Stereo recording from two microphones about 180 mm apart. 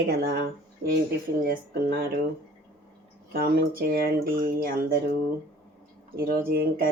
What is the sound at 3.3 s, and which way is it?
A woman's voice, 55° right (ahead or behind).